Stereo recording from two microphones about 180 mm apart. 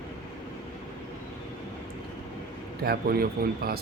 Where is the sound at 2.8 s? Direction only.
55° right (ahead or behind).